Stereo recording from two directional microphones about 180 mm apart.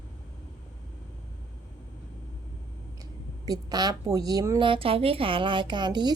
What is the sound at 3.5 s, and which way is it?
A woman's voice, 20° right (ahead or behind).